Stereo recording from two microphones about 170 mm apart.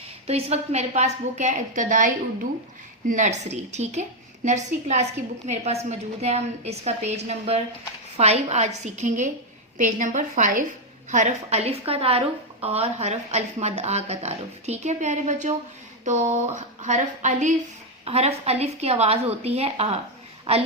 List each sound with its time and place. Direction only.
0.3 s a woman's voice: 35° right (ahead or behind)